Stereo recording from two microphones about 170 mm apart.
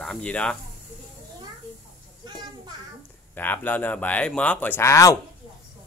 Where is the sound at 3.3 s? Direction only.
10° left (ahead or behind).